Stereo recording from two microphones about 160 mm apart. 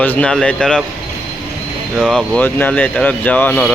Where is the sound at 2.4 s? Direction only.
10° left (ahead or behind).